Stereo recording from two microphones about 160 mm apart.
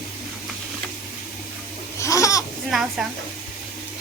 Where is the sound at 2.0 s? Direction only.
20° left (ahead or behind).